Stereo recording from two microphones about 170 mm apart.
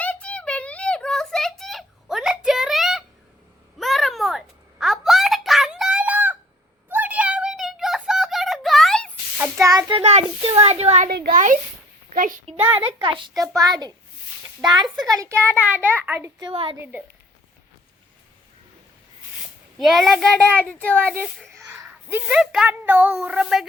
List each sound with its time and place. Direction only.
0.0 s a sound: 10° left (ahead or behind)
9.4 s child singing: 20° right (ahead or behind)
9.9 s a child's voice: 40° right (ahead or behind)
11.1 s a child's voice: 55° right (ahead or behind)
12.7 s a child's voice: 30° right (ahead or behind); by 16.3 s 15° right (ahead or behind)
16.4 s a child's voice: 30° right (ahead or behind)
16.7 s a child's voice: 10° right (ahead or behind)
19.8 s speech: centre (ahead or behind)
21.6 s speech: 15° right (ahead or behind)